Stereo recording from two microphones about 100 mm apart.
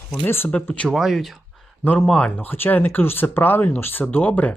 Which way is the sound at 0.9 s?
Centre (ahead or behind).